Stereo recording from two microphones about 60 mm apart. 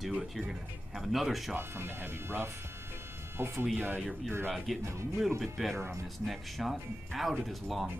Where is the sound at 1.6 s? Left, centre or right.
Right.